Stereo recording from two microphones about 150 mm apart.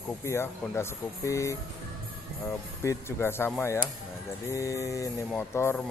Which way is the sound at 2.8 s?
15° left (ahead or behind).